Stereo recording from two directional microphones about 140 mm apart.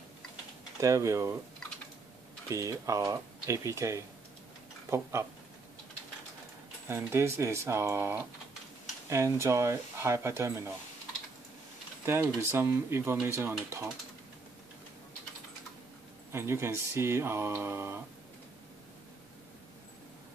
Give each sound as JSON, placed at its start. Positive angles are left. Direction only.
{"t": 0.7, "sound": "speech", "side_deg": -20}
{"t": 2.5, "sound": "speech", "side_deg": -25}
{"t": 6.9, "sound": "speech", "side_deg": -20}
{"t": 12.1, "sound": "speech", "side_deg": -20}
{"t": 16.3, "sound": "speech", "side_deg": -20}